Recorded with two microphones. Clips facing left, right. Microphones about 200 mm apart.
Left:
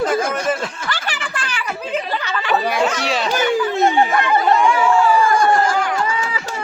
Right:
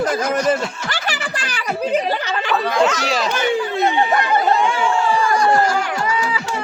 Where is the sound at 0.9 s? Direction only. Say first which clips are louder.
Right 1 dB; 40° right (ahead or behind).